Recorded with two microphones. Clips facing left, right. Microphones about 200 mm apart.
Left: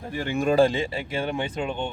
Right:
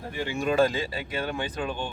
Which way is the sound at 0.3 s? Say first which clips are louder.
Left 5 dB; 55° left (ahead or behind).